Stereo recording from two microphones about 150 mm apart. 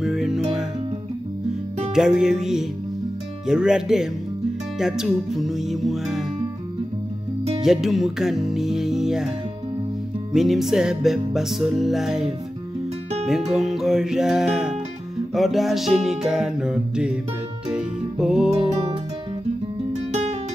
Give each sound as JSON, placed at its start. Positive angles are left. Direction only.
{"t": 0.0, "sound": "music", "side_deg": -5}
{"t": 2.0, "sound": "music", "side_deg": -5}
{"t": 7.6, "sound": "music", "side_deg": 0}
{"t": 10.3, "sound": "music", "side_deg": 0}
{"t": 13.5, "sound": "music", "side_deg": 0}
{"t": 19.9, "sound": "guitar", "side_deg": -45}